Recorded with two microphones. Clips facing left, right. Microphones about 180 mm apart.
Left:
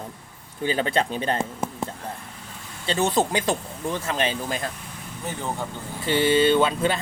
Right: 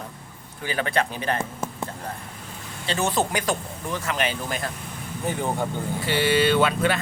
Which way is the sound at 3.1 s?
25° left (ahead or behind).